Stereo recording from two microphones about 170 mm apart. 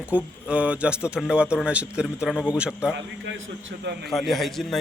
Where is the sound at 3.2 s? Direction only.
85° right.